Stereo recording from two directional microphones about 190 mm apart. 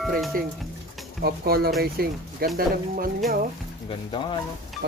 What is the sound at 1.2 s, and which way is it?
Music, 55° right (ahead or behind).